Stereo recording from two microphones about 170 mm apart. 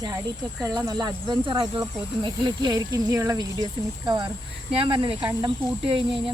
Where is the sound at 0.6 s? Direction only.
20° right (ahead or behind).